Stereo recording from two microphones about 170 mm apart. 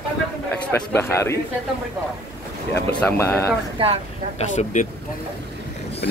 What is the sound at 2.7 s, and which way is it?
Speech, 10° left (ahead or behind).